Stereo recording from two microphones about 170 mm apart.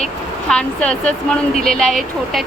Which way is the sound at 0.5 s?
5° left (ahead or behind).